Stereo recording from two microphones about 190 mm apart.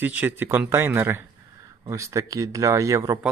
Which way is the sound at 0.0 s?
10° right (ahead or behind).